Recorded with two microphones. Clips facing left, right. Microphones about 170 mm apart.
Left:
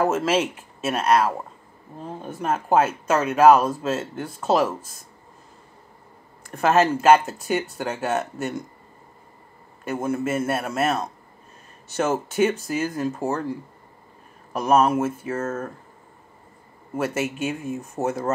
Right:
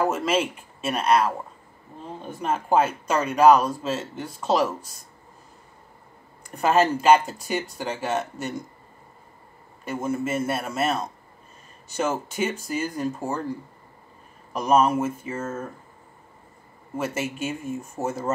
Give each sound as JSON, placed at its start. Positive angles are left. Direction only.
{"t": 0.1, "sound": "speech", "side_deg": 5}
{"t": 6.6, "sound": "speech", "side_deg": 5}
{"t": 9.8, "sound": "speech", "side_deg": 10}
{"t": 14.5, "sound": "speech", "side_deg": 5}
{"t": 16.9, "sound": "speech", "side_deg": 10}
{"t": 17.5, "sound": "speech", "side_deg": 50}
{"t": 18.0, "sound": "speech", "side_deg": 15}